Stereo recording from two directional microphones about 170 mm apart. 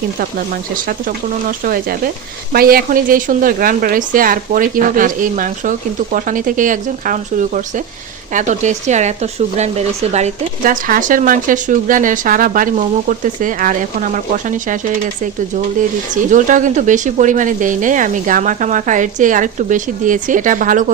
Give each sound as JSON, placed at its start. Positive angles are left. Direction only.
{"t": 0.9, "sound": "speech", "side_deg": -55}
{"t": 16.3, "sound": "speech", "side_deg": -50}